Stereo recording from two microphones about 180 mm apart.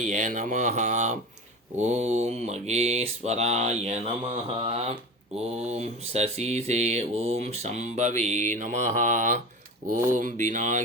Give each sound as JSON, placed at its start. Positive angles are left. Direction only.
{"t": 0.0, "sound": "speech", "side_deg": -45}
{"t": 1.8, "sound": "mantra", "side_deg": -40}
{"t": 10.1, "sound": "speech", "side_deg": -45}